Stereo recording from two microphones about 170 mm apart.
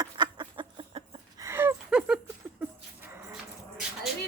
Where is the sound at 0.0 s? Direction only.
25° right (ahead or behind).